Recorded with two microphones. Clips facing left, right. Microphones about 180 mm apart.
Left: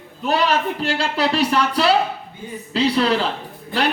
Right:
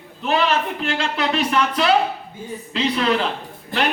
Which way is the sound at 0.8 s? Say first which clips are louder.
Left 2 dB; 35° left (ahead or behind).